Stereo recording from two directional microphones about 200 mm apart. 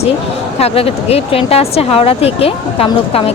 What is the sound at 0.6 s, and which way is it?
Speech, 30° left (ahead or behind).